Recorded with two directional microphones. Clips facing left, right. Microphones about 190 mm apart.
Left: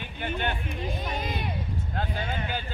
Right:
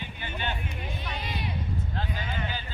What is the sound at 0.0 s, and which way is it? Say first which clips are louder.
Speech: left 5 dB; 55° left (ahead or behind).